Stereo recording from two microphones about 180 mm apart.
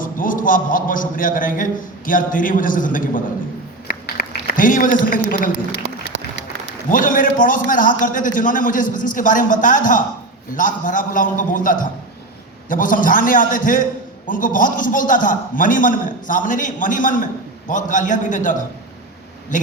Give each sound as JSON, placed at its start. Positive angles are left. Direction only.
{"t": 0.0, "sound": "a man's voice", "side_deg": 50}
{"t": 3.8, "sound": "a sound", "side_deg": 60}
{"t": 6.1, "sound": "applause", "side_deg": -90}
{"t": 6.9, "sound": "a man's voice", "side_deg": 50}